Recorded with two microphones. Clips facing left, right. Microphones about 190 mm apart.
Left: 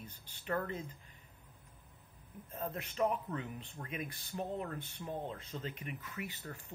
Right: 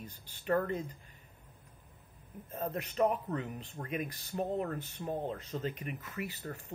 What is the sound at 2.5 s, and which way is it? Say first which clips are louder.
Speech: right 5 dB; 40° right (ahead or behind).